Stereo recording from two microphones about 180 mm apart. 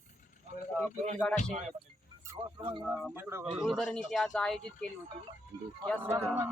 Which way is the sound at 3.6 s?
Centre (ahead or behind).